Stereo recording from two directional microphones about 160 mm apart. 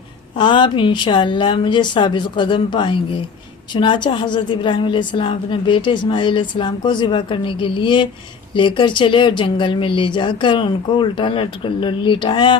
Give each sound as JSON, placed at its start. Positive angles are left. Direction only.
{"t": 0.3, "sound": "a woman's voice", "side_deg": 30}